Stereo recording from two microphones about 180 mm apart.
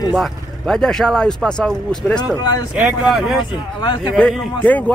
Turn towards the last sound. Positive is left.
turn(degrees=10)  # may be behind; listen again after turning